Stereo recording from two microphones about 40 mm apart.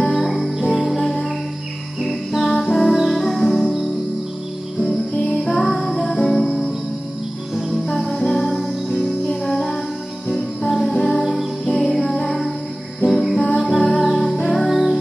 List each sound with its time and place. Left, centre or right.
0.1 s music: centre
5.3 s music: centre
7.7 s music: centre